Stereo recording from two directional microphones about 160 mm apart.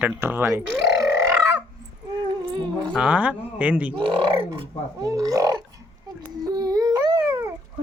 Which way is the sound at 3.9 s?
35° right (ahead or behind).